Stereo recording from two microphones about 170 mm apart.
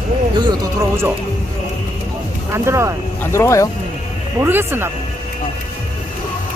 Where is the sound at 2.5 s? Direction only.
15° right (ahead or behind).